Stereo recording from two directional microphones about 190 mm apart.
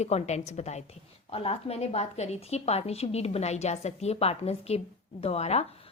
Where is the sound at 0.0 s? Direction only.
35° left (ahead or behind).